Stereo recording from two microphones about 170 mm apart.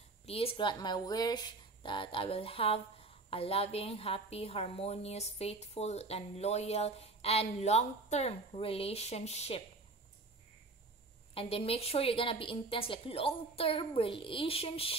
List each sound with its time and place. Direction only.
0.3 s speech: 35° left (ahead or behind)
11.3 s speech: 35° left (ahead or behind)